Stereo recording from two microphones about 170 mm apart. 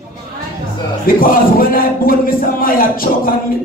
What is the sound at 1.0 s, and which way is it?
A man's voice, 55° left (ahead or behind).